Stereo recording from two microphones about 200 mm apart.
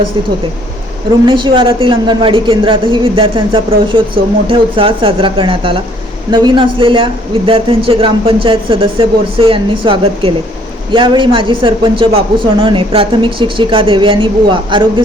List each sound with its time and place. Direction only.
1.3 s a woman's voice: 25° right (ahead or behind)